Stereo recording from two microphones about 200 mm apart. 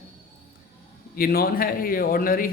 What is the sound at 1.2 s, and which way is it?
A man's voice, 45° left (ahead or behind).